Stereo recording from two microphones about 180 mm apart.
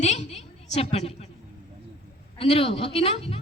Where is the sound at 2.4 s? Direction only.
30° left (ahead or behind).